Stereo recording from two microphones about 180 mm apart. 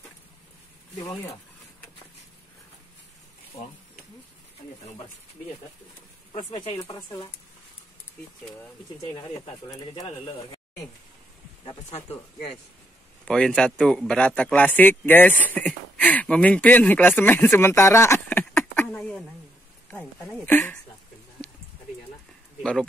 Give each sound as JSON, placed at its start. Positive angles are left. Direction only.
{"t": 6.3, "sound": "speech", "side_deg": 40}
{"t": 6.8, "sound": "speech", "side_deg": 20}
{"t": 10.0, "sound": "speech", "side_deg": 35}
{"t": 11.6, "sound": "speech", "side_deg": 35}
{"t": 13.2, "sound": "speech", "side_deg": 5}
{"t": 18.4, "sound": "a sound", "side_deg": 5}
{"t": 19.9, "sound": "speech", "side_deg": 5}
{"t": 22.6, "sound": "speech", "side_deg": 5}